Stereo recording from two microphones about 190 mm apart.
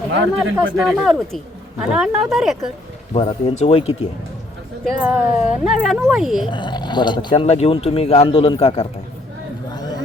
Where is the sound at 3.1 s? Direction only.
30° left (ahead or behind).